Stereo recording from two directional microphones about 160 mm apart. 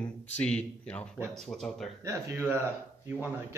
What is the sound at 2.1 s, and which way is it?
Speech, 15° right (ahead or behind).